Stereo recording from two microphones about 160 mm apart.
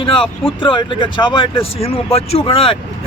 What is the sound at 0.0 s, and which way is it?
Speech, 35° left (ahead or behind).